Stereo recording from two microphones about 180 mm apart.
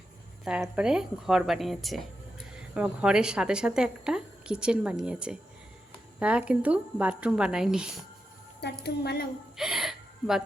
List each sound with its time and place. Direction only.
0.6 s a woman's voice: 5° right (ahead or behind)
8.8 s a woman's voice: 65° left (ahead or behind)
9.6 s gasp: centre (ahead or behind)